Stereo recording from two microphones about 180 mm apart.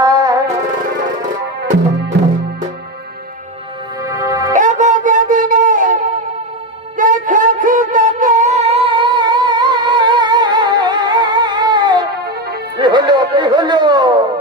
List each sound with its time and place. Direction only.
0.0 s music: 20° right (ahead or behind)
4.1 s music: 15° right (ahead or behind)
4.5 s music: 45° right (ahead or behind); by 14.3 s 25° right (ahead or behind)